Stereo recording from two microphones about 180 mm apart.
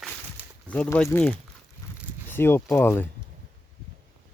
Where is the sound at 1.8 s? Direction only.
15° left (ahead or behind).